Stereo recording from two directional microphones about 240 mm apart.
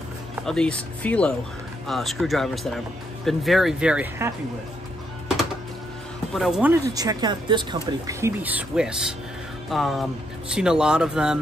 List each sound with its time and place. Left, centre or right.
0.5 s speech: centre
6.3 s speech: centre
6.9 s speech: centre